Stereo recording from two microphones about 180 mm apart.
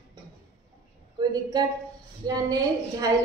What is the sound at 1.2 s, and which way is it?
A woman's voice, 20° right (ahead or behind).